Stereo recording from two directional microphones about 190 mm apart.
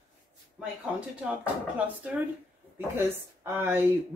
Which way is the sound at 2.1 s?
5° right (ahead or behind).